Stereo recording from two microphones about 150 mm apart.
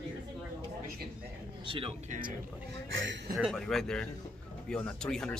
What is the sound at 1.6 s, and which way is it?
Speech, 35° right (ahead or behind).